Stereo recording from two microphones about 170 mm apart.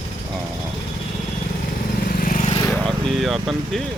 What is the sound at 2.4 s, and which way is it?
Vehicle, 30° left (ahead or behind).